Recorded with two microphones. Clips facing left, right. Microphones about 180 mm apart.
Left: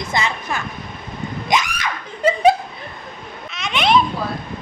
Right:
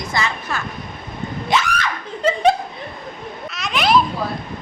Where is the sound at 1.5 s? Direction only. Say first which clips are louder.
Right 1 dB; 15° left (ahead or behind).